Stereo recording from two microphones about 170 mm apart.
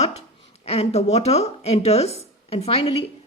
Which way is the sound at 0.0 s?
40° left (ahead or behind).